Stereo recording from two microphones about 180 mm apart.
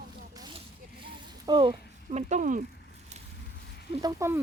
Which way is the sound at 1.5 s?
25° right (ahead or behind).